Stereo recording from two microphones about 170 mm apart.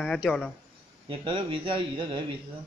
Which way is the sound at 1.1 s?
30° right (ahead or behind).